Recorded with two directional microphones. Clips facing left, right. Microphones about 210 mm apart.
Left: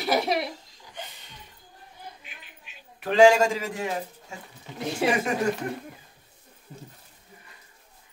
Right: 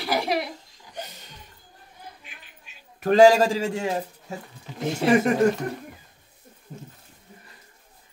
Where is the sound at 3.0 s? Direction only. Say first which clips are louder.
Right 2 dB; 40° right (ahead or behind).